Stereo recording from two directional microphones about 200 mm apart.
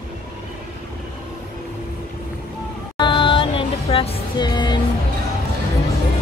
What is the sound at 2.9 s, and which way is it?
Music, 25° left (ahead or behind).